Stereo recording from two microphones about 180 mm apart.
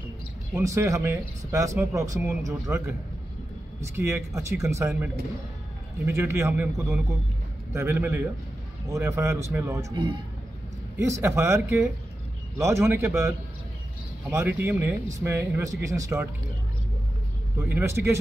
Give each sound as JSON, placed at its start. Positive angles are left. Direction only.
{"t": 0.5, "sound": "speech", "side_deg": -15}
{"t": 14.6, "sound": "speech", "side_deg": -10}
{"t": 17.6, "sound": "speech", "side_deg": -10}